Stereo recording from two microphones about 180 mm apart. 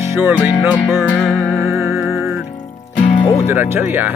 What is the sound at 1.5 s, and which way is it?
Music, centre (ahead or behind).